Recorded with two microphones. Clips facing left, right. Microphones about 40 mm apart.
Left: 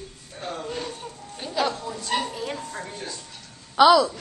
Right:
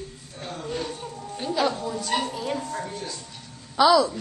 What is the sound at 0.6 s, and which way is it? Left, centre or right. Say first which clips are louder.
Speech: right 1 dB; centre.